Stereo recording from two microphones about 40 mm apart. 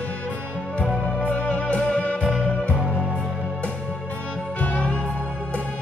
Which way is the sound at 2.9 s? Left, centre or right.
Right.